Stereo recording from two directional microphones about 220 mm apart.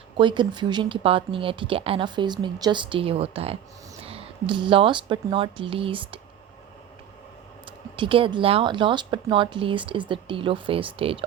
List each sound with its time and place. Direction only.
0.2 s speech: 20° right (ahead or behind)
7.9 s speech: 25° right (ahead or behind)